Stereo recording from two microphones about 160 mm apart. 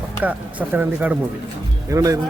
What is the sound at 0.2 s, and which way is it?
A man's voice, 10° right (ahead or behind).